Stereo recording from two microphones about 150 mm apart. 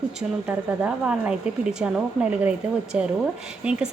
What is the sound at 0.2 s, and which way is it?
A woman's voice, 5° right (ahead or behind).